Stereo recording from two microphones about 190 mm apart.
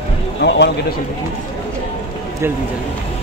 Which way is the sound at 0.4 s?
65° left (ahead or behind).